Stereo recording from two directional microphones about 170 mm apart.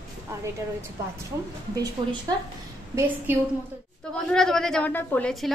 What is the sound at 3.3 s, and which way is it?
Speech, 15° right (ahead or behind).